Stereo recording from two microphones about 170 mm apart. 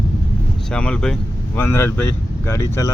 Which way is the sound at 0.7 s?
5° left (ahead or behind).